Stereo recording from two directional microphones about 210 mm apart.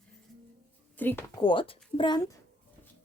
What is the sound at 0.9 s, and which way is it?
Speech, 10° left (ahead or behind).